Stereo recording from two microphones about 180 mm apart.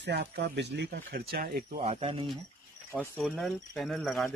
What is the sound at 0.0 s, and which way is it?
Speech, 70° right (ahead or behind).